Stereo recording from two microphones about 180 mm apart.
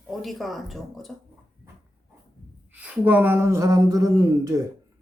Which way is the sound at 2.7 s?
10° right (ahead or behind).